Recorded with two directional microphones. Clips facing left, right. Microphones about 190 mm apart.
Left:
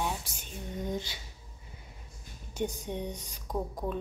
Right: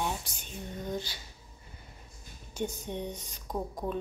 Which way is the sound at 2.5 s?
15° left (ahead or behind).